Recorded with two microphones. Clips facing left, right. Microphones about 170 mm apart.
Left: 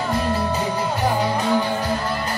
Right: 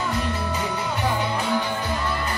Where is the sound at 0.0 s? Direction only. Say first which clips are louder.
Left 4 dB; 40° left (ahead or behind).